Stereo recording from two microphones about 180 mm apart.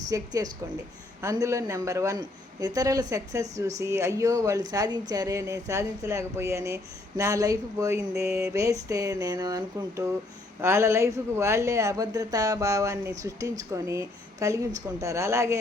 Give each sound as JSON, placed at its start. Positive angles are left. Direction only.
{"t": 0.1, "sound": "speech", "side_deg": -20}